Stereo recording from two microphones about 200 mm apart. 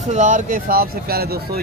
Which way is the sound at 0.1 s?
40° right (ahead or behind).